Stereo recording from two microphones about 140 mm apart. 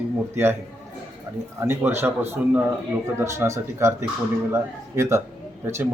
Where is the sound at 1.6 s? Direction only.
15° right (ahead or behind).